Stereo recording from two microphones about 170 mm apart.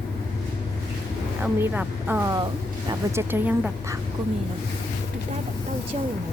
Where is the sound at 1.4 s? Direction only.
10° right (ahead or behind).